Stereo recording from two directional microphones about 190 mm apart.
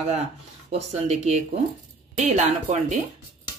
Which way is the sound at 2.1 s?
35° right (ahead or behind).